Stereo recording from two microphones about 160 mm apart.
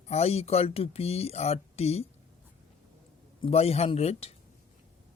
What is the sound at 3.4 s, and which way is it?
Speech, 40° left (ahead or behind).